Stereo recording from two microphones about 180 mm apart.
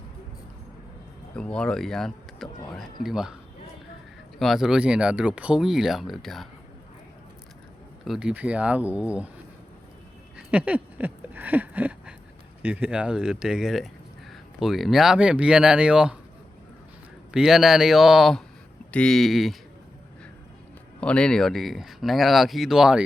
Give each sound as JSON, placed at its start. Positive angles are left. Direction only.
{"t": 1.4, "sound": "speech", "side_deg": 5}
{"t": 4.4, "sound": "speech", "side_deg": 0}
{"t": 8.0, "sound": "speech", "side_deg": -5}
{"t": 10.3, "sound": "a sound", "side_deg": -5}
{"t": 12.6, "sound": "speech", "side_deg": -5}
{"t": 17.3, "sound": "speech", "side_deg": 0}
{"t": 21.0, "sound": "speech", "side_deg": 5}